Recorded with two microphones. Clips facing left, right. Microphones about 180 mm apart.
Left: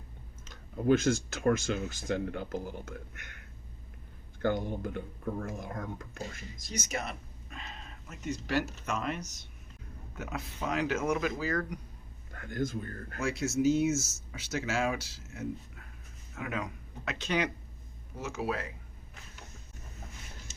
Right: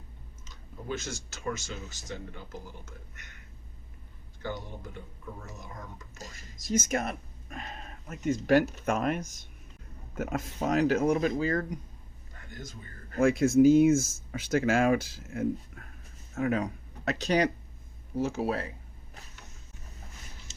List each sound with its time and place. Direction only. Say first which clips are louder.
0.4 s speech: left 11 dB; 55° left (ahead or behind)
4.4 s speech: left 7 dB; 55° left (ahead or behind)
6.7 s speech: right 8 dB; 50° right (ahead or behind); by 11.8 s 25° right (ahead or behind)
12.3 s speech: left 11 dB; 55° left (ahead or behind)
13.1 s speech: right 9 dB; 50° right (ahead or behind); by 18.7 s 30° right (ahead or behind)